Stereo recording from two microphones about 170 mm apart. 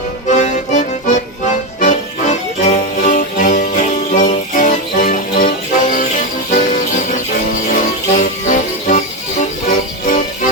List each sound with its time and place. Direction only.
0.3 s accordion: 45° left (ahead or behind)
1.8 s music: 45° left (ahead or behind)
6.5 s music: 45° left (ahead or behind)